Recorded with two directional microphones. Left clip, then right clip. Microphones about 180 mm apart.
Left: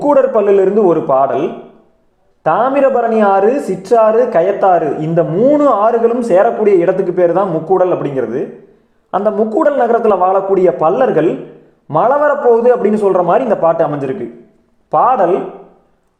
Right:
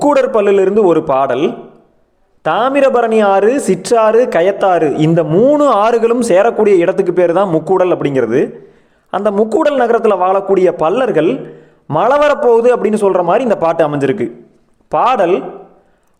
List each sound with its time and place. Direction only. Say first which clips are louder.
0.0 s a man's voice: even; 30° right (ahead or behind)
5.5 s a man's voice: left 1 dB; 35° right (ahead or behind)
7.5 s a man's voice: right 1 dB; 40° right (ahead or behind); by 9.3 s 20° right (ahead or behind)
9.3 s a man's voice: right 2 dB; 35° right (ahead or behind)
9.7 s a man's voice: even; 20° right (ahead or behind)
13.2 s speech: even; 15° right (ahead or behind)
13.5 s a man's voice: even; 30° right (ahead or behind)